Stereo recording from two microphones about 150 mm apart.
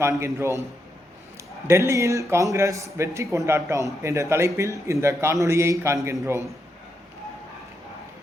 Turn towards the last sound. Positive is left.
turn(degrees=-15)  # may be behind; listen again after turning